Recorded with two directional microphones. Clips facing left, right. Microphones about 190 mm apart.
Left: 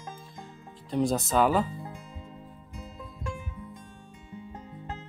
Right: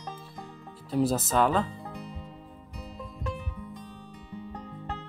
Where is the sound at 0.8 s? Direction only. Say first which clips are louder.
Right 1 dB; 5° right (ahead or behind).